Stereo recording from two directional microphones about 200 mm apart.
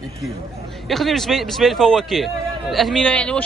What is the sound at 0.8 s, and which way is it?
A man's voice, centre (ahead or behind).